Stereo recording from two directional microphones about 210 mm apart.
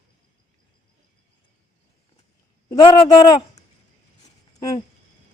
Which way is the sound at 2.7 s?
20° left (ahead or behind).